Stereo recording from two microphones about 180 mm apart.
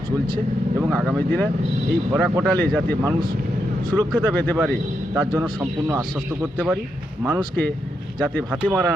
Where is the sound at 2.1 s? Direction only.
10° right (ahead or behind).